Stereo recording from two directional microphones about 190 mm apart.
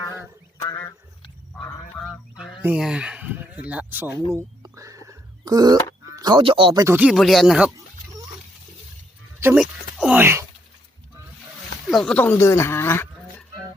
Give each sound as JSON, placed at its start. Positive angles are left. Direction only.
{"t": 0.6, "sound": "goose", "side_deg": 20}
{"t": 2.0, "sound": "goose", "side_deg": 0}
{"t": 2.6, "sound": "speech", "side_deg": -5}
{"t": 4.4, "sound": "a sound", "side_deg": -15}
{"t": 6.1, "sound": "speech", "side_deg": -20}
{"t": 6.8, "sound": "speech", "side_deg": -10}
{"t": 9.4, "sound": "speech", "side_deg": -5}
{"t": 11.9, "sound": "speech", "side_deg": 5}